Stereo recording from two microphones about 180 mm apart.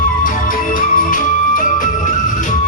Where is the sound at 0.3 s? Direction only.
50° left (ahead or behind).